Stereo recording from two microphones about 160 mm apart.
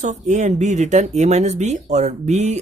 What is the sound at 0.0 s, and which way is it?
Speech, 45° right (ahead or behind).